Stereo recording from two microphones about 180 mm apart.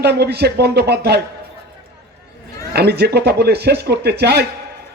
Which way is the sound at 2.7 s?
65° right (ahead or behind).